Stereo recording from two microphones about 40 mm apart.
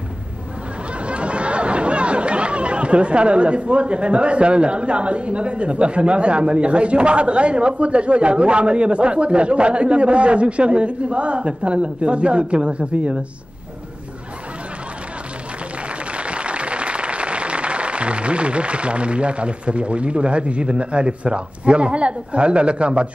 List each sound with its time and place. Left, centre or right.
1.0 s chatter: right
16.1 s applause: right